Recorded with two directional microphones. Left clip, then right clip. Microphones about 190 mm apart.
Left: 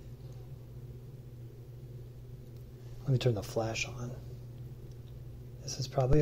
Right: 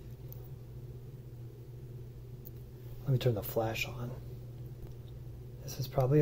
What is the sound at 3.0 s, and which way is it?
Speech, 20° left (ahead or behind).